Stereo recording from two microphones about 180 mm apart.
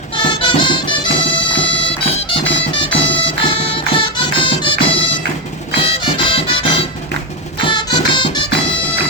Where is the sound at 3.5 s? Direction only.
30° left (ahead or behind).